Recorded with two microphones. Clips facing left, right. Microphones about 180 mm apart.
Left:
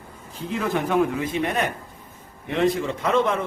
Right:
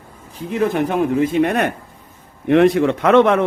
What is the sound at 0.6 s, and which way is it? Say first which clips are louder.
Speech: right 4 dB; 20° right (ahead or behind).